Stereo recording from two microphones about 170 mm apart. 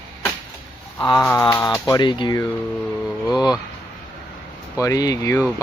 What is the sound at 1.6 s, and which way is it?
Speech, 5° left (ahead or behind).